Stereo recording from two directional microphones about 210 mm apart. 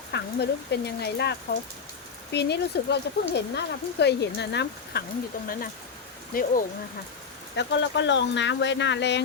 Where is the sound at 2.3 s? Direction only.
55° left (ahead or behind).